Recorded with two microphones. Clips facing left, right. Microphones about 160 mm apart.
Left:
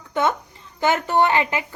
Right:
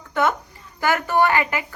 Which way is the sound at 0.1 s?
20° left (ahead or behind).